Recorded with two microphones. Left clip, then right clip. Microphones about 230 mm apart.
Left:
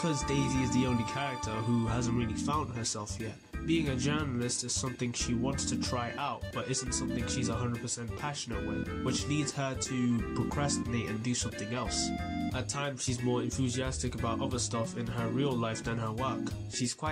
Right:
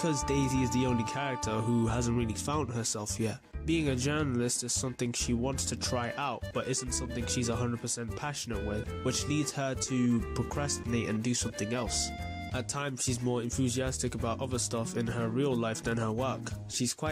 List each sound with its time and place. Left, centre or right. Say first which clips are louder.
0.0 s speech: right 2 dB; right
3.6 s speech: right 1 dB; right
9.0 s speech: right 2 dB; right
13.3 s speech: left 1 dB; right